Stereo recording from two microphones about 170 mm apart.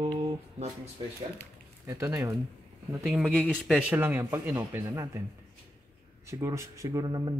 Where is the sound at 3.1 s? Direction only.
Centre (ahead or behind).